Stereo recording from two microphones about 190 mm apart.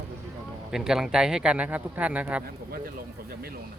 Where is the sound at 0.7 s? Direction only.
5° right (ahead or behind).